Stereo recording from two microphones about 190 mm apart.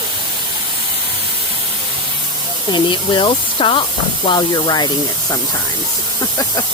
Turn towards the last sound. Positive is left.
turn(degrees=20)  # may be behind; listen again after turning